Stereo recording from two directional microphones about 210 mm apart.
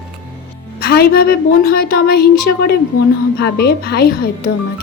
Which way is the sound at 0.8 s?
50° left (ahead or behind).